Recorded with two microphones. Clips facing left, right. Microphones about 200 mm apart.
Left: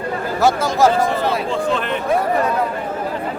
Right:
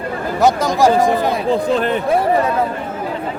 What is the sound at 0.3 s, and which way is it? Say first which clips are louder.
Speech: right 2 dB; 15° right (ahead or behind).